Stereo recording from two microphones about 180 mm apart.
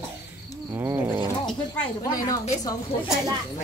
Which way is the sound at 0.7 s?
10° right (ahead or behind).